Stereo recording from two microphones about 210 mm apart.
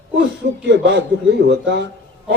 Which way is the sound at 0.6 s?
55° right (ahead or behind).